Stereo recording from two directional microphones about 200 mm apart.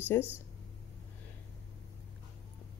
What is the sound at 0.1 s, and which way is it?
Speech, 10° left (ahead or behind).